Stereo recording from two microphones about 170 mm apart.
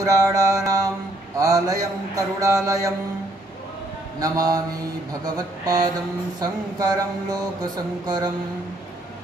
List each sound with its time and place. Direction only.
0.0 s mantra: 20° right (ahead or behind)
4.2 s mantra: 20° right (ahead or behind)